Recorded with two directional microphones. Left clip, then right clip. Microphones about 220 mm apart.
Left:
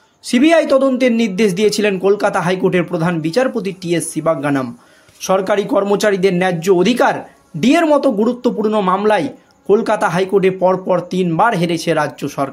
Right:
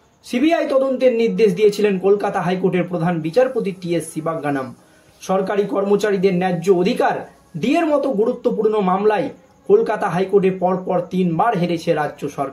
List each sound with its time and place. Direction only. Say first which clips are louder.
0.3 s speech: left 5 dB; 45° left (ahead or behind)